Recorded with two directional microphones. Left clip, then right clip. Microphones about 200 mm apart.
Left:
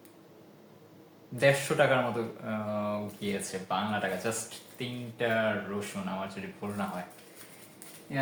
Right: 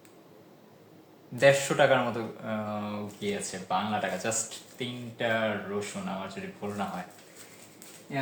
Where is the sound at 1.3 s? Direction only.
15° right (ahead or behind).